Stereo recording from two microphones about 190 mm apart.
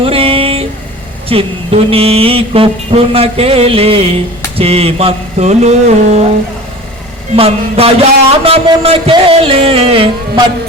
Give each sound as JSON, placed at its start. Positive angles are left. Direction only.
{"t": 0.0, "sound": "a sound", "side_deg": -30}
{"t": 1.3, "sound": "mantra", "side_deg": -30}
{"t": 7.3, "sound": "mantra", "side_deg": -30}